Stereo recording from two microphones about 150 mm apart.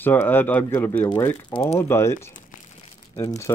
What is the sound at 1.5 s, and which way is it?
Speech, 40° left (ahead or behind).